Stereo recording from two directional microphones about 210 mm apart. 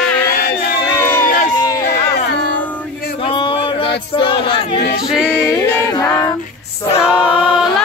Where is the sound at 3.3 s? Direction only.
25° left (ahead or behind).